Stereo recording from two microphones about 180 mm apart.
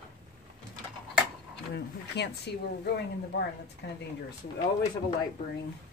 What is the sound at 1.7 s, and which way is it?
Speech, 70° left (ahead or behind).